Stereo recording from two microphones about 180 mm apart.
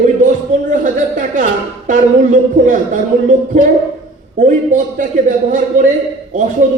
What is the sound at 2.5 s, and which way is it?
Speech, 45° right (ahead or behind).